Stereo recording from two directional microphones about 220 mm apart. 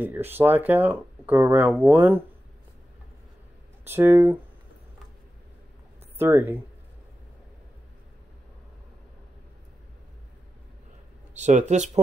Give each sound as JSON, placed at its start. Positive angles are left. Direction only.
{"t": 0.0, "sound": "speech", "side_deg": -10}
{"t": 3.8, "sound": "speech", "side_deg": -10}
{"t": 6.1, "sound": "speech", "side_deg": -10}
{"t": 11.3, "sound": "speech", "side_deg": -30}